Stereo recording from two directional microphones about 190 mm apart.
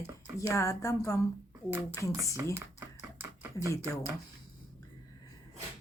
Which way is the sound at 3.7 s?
15° left (ahead or behind).